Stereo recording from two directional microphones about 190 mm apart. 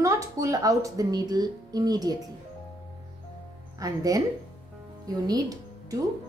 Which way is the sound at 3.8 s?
20° right (ahead or behind).